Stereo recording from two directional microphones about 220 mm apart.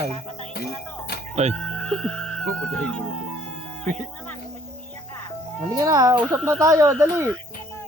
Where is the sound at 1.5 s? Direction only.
5° left (ahead or behind).